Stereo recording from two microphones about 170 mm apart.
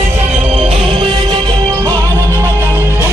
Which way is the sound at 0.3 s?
35° right (ahead or behind).